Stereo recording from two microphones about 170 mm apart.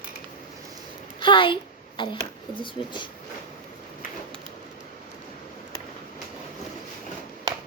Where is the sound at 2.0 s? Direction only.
30° left (ahead or behind).